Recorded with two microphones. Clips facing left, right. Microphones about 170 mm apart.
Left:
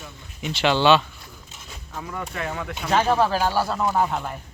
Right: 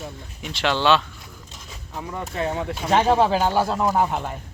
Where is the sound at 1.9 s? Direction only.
20° right (ahead or behind).